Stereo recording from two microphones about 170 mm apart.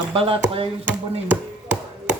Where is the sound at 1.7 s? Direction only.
5° right (ahead or behind).